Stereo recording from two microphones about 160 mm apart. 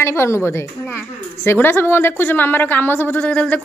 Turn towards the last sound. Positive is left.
turn(degrees=10)  # may be behind; listen again after turning